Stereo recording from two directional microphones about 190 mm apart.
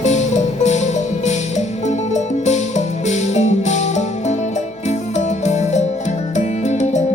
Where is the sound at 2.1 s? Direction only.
35° left (ahead or behind).